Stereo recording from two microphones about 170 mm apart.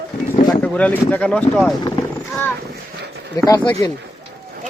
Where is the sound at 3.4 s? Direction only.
25° left (ahead or behind).